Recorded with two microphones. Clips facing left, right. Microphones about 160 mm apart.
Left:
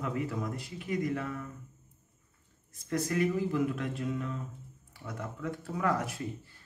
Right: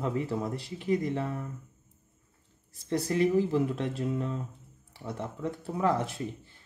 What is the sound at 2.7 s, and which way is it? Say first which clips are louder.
Speech: right 2 dB; 30° right (ahead or behind).